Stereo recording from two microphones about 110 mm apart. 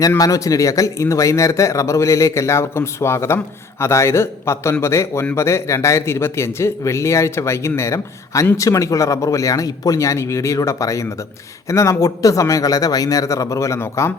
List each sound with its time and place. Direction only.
0.2 s speech: 30° left (ahead or behind)